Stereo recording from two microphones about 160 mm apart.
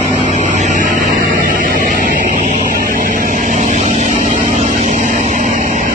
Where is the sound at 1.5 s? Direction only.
60° right (ahead or behind).